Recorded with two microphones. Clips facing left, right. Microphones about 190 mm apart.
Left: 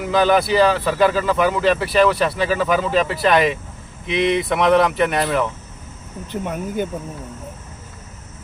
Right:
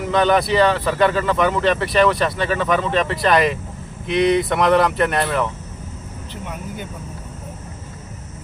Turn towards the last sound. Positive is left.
turn(degrees=50)  # may be behind; listen again after turning